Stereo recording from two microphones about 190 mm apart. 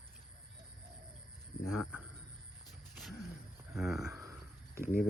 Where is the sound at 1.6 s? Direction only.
5° right (ahead or behind).